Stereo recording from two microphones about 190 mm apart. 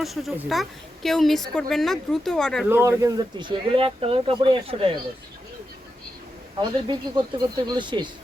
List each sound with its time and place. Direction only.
0.0 s a woman's voice: centre (ahead or behind)
2.6 s speech: 10° right (ahead or behind); by 4.9 s 30° right (ahead or behind)
6.6 s speech: 25° right (ahead or behind)